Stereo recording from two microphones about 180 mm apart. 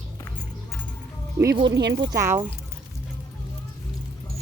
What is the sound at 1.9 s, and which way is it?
Speech, 20° right (ahead or behind).